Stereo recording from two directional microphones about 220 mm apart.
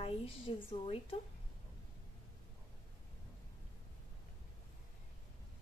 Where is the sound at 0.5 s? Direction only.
25° left (ahead or behind).